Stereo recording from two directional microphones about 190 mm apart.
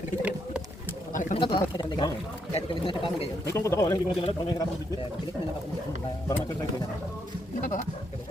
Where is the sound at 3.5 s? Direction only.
15° left (ahead or behind).